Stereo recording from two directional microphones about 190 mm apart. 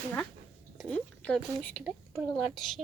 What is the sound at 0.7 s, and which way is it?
A woman's voice, 5° left (ahead or behind).